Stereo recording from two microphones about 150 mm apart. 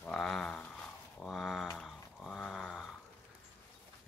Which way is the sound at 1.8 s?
Centre (ahead or behind).